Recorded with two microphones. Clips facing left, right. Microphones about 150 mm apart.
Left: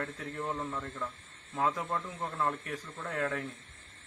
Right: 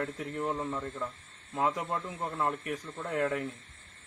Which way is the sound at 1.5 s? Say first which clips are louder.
Right 1 dB; 5° right (ahead or behind).